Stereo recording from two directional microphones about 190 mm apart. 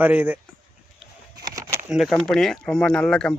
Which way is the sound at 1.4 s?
20° right (ahead or behind).